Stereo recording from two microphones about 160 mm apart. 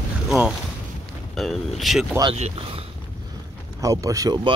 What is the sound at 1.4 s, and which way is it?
Boat, centre (ahead or behind).